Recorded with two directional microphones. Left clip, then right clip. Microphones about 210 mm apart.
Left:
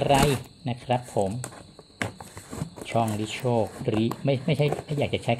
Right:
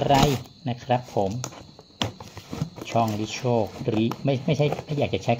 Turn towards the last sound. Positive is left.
turn(degrees=20)  # may be behind; listen again after turning